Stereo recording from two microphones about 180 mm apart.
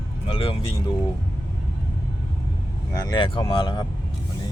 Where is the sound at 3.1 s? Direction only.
25° left (ahead or behind).